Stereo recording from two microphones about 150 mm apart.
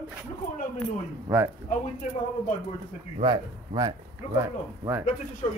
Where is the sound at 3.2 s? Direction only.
30° right (ahead or behind).